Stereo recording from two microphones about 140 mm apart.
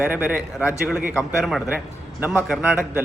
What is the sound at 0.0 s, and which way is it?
A man's voice, 10° right (ahead or behind).